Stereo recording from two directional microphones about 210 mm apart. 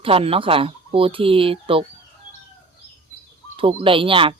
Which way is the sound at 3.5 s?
25° right (ahead or behind).